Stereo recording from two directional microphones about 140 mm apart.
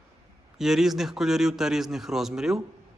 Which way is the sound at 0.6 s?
Centre (ahead or behind).